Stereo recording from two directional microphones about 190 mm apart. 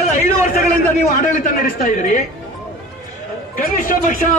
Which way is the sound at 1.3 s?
45° left (ahead or behind).